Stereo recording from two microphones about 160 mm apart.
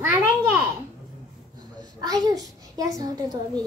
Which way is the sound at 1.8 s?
25° right (ahead or behind).